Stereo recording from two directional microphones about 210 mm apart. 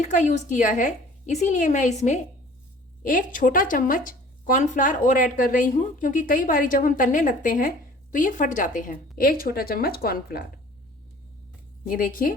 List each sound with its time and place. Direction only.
0.0 s a woman's voice: 35° left (ahead or behind)
11.9 s a woman's voice: 40° left (ahead or behind)